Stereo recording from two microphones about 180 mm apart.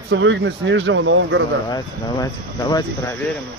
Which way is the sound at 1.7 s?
20° left (ahead or behind).